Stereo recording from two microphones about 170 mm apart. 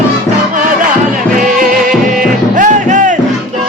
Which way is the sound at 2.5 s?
50° right (ahead or behind).